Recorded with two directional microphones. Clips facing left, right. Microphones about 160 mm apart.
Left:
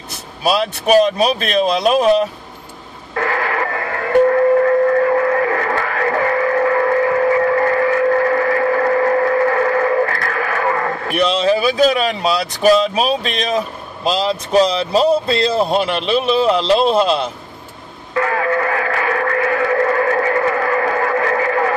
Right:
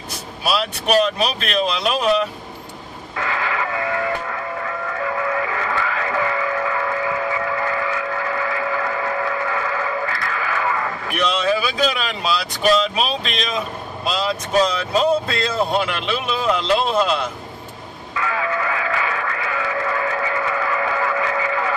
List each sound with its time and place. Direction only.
1.6 s speech: 45° left (ahead or behind)
3.2 s train: 45° left (ahead or behind)
11.1 s speech: 30° left (ahead or behind)
18.1 s music: 45° left (ahead or behind)